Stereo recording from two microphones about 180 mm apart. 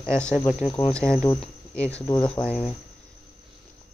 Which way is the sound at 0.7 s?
20° left (ahead or behind).